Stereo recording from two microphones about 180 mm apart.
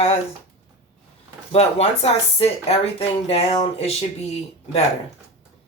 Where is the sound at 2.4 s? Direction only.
35° left (ahead or behind).